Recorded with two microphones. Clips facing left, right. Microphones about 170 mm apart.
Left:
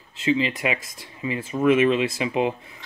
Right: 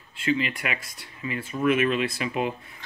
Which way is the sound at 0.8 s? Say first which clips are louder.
Left 3 dB; 90° left.